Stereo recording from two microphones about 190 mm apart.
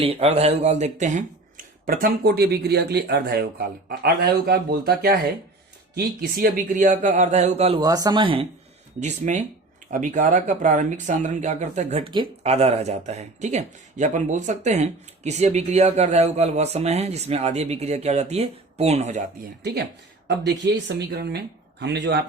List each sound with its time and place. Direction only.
0.0 s speech: 30° right (ahead or behind)
7.8 s speech: 20° right (ahead or behind)
9.0 s speech: 40° right (ahead or behind)
20.2 s speech: 65° right (ahead or behind)